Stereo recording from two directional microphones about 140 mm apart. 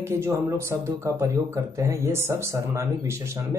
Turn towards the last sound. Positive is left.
turn(degrees=-20)  # may be behind; listen again after turning